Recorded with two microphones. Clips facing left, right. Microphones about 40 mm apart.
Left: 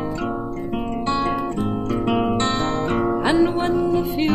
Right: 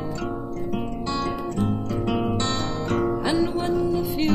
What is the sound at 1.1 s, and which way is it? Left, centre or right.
Music, left.